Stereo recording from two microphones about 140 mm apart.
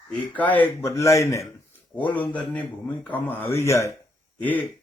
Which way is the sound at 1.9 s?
10° left (ahead or behind).